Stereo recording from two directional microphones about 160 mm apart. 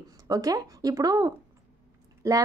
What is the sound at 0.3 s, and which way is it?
Speech, 25° right (ahead or behind).